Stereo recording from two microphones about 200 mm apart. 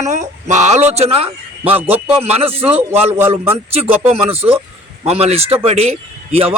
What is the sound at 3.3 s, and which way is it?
A man's voice, 30° right (ahead or behind).